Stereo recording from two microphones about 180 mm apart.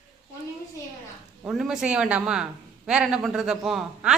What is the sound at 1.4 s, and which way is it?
Speech, 5° right (ahead or behind).